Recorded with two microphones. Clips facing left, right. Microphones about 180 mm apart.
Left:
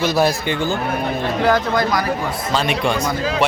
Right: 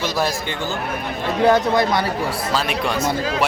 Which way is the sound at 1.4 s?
25° right (ahead or behind).